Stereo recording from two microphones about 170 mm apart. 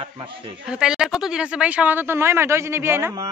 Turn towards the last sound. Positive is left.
turn(degrees=-15)  # may be behind; listen again after turning